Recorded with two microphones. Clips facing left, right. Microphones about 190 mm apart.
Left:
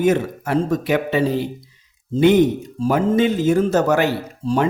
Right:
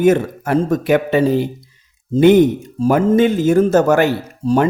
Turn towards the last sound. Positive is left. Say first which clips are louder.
# right 4 dB
turn(degrees=-50)  # may be behind; listen again after turning